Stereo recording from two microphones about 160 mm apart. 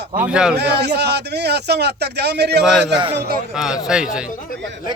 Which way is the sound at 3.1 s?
75° right (ahead or behind).